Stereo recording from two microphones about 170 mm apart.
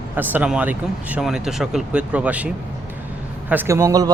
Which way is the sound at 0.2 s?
10° right (ahead or behind).